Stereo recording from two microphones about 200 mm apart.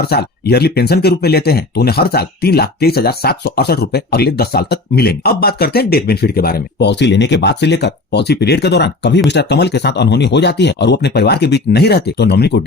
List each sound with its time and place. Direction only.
0.1 s speech: 50° left (ahead or behind)